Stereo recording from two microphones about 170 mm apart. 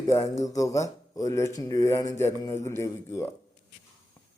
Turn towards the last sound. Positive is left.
turn(degrees=15)  # may be behind; listen again after turning